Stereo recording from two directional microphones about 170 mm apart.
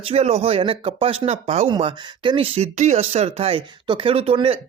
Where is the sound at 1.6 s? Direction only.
25° right (ahead or behind).